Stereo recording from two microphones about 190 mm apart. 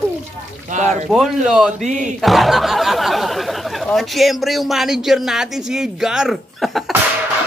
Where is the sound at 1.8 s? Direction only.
40° right (ahead or behind).